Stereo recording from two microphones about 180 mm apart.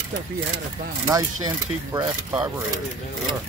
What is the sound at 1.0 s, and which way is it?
Speech, 20° right (ahead or behind).